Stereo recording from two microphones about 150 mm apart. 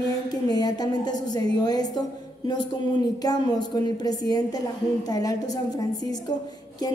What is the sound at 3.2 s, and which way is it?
A woman's voice, 25° left (ahead or behind).